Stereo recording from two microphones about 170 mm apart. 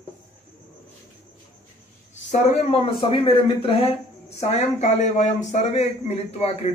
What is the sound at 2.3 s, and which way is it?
Speech, 40° left (ahead or behind).